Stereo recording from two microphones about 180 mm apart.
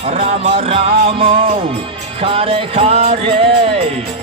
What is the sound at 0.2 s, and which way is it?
Music, 35° right (ahead or behind).